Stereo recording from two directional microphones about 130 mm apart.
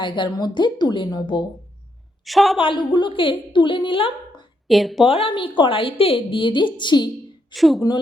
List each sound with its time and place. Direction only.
0.0 s a woman's voice: 35° left (ahead or behind)
2.2 s a woman's voice: centre (ahead or behind)
2.6 s a woman's voice: 40° left (ahead or behind)
4.7 s a woman's voice: centre (ahead or behind)
5.0 s a woman's voice: 45° left (ahead or behind)
7.5 s a woman's voice: centre (ahead or behind)
7.8 s a woman's voice: 35° left (ahead or behind)